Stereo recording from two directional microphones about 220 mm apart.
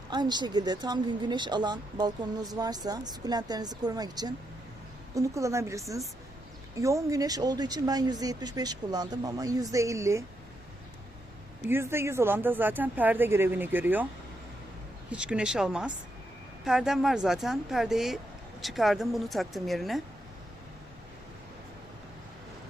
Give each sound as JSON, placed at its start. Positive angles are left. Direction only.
{"t": 0.1, "sound": "speech", "side_deg": -20}
{"t": 11.7, "sound": "speech", "side_deg": -10}
{"t": 15.1, "sound": "a woman's voice", "side_deg": -5}